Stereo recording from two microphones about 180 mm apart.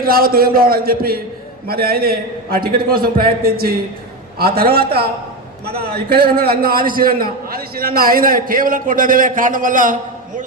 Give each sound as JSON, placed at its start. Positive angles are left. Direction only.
{"t": 0.0, "sound": "a man's voice", "side_deg": -55}